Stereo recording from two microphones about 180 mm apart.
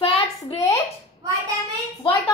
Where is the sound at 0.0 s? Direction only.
35° left (ahead or behind).